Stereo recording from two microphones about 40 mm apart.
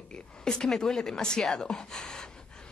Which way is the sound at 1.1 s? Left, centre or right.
Centre.